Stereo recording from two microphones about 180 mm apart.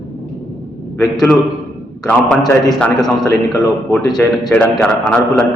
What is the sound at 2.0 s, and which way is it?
A man's voice, 10° left (ahead or behind).